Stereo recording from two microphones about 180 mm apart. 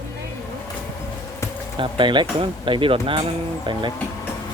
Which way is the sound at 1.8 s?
25° right (ahead or behind).